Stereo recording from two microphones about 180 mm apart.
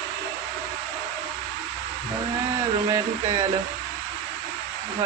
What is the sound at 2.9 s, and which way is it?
Speech, 20° right (ahead or behind).